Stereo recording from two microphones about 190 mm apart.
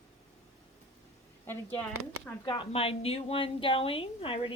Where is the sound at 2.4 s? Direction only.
25° left (ahead or behind).